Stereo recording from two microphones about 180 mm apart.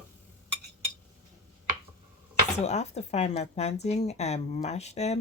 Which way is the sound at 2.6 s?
40° left (ahead or behind).